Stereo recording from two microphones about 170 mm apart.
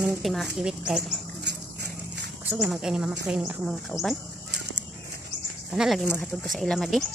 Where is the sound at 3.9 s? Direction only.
15° left (ahead or behind).